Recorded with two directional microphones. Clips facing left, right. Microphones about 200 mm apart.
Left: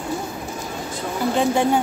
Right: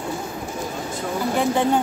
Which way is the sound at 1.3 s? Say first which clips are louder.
Left 1 dB; 10° left (ahead or behind).